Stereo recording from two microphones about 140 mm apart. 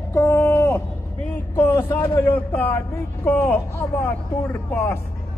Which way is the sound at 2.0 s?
15° left (ahead or behind).